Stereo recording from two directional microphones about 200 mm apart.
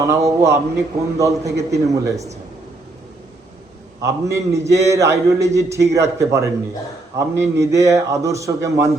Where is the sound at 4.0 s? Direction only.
15° right (ahead or behind).